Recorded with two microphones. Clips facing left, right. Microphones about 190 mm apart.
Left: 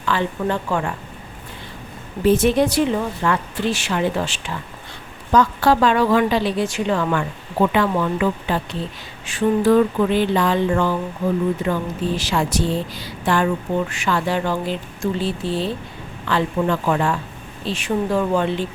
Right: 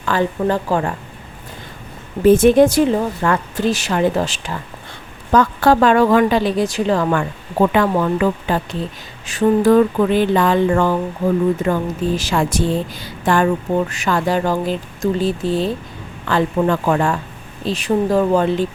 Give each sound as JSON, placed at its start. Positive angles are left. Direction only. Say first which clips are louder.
{"t": 0.0, "sound": "speech", "louder": "right 4 dB", "side_deg": -45}
{"t": 2.2, "sound": "a woman's voice", "louder": "right 6 dB", "side_deg": -50}
{"t": 5.3, "sound": "a woman's voice", "louder": "right 2 dB", "side_deg": -50}